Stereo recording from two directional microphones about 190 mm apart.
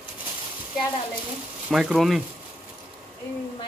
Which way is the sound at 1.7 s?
5° right (ahead or behind).